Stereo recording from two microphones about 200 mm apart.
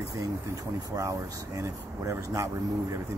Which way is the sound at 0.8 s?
15° right (ahead or behind).